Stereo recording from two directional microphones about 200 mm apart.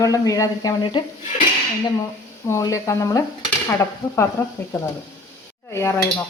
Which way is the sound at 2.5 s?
15° left (ahead or behind).